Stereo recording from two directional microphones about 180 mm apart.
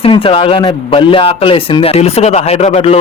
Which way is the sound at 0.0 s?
30° left (ahead or behind).